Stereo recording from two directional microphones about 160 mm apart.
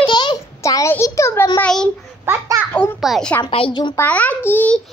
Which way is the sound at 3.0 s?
Centre (ahead or behind).